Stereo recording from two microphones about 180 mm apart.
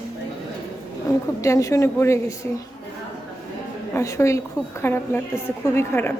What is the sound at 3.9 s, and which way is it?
A woman's voice, 15° left (ahead or behind).